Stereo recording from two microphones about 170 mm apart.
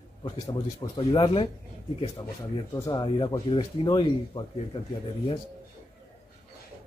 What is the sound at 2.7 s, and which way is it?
Speech, 25° left (ahead or behind).